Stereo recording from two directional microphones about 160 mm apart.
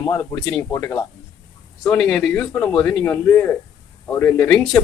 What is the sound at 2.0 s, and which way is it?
Speech, 5° left (ahead or behind).